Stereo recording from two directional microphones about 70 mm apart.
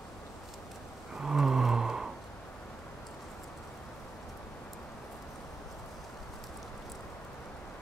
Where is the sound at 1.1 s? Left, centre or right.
Centre.